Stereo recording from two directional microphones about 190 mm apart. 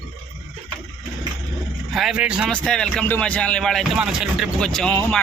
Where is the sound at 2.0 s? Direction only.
5° right (ahead or behind).